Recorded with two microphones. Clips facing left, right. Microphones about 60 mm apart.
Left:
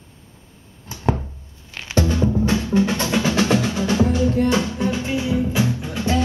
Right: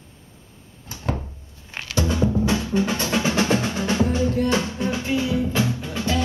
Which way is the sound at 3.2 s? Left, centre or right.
Right.